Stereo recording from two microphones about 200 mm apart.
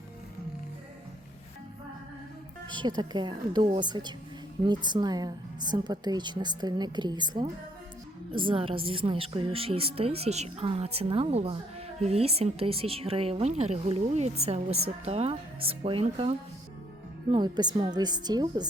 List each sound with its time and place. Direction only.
2.6 s a woman's voice: 20° right (ahead or behind)
17.3 s a woman's voice: 20° right (ahead or behind)